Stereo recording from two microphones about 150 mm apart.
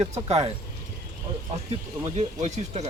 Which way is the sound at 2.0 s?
45° right (ahead or behind).